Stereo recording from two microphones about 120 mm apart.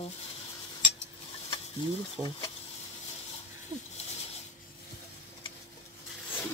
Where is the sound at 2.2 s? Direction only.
30° right (ahead or behind).